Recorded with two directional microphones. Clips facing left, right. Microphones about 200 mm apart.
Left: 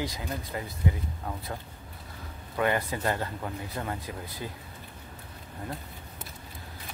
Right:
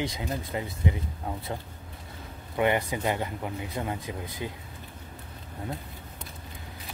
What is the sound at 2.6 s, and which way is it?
Speech, 20° right (ahead or behind).